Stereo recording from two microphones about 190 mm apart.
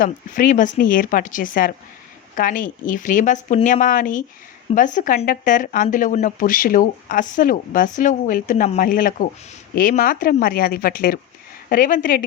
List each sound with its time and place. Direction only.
0.0 s speech: 45° left (ahead or behind)